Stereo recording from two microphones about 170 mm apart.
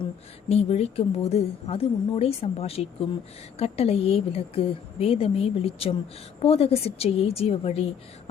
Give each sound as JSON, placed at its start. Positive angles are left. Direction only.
{"t": 0.0, "sound": "speech", "side_deg": 35}